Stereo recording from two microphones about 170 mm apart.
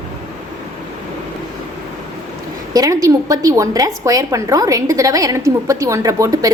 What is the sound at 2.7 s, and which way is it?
A woman's voice, 20° right (ahead or behind).